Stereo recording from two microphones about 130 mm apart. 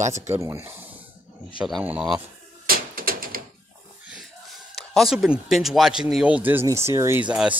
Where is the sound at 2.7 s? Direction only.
90° right.